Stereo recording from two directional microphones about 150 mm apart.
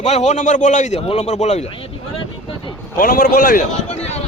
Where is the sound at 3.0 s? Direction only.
65° left (ahead or behind).